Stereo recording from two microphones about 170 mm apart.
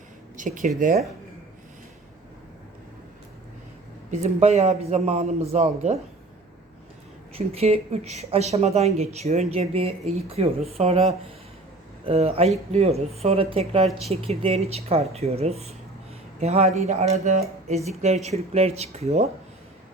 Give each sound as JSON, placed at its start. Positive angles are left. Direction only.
{"t": 0.3, "sound": "speech", "side_deg": -50}
{"t": 4.1, "sound": "speech", "side_deg": -40}
{"t": 7.3, "sound": "speech", "side_deg": -35}